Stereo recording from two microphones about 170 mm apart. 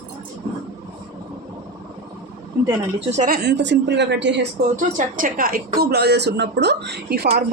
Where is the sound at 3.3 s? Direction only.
80° right.